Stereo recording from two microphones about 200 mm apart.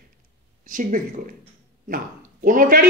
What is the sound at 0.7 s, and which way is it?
Speech, 40° right (ahead or behind).